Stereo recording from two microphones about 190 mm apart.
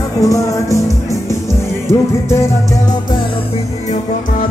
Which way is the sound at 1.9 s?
15° left (ahead or behind).